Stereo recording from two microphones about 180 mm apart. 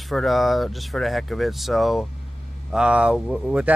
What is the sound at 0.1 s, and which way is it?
Speech, centre (ahead or behind).